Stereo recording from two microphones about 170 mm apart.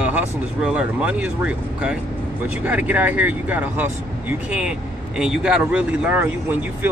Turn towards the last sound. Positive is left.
turn(degrees=-10)  # may be behind; listen again after turning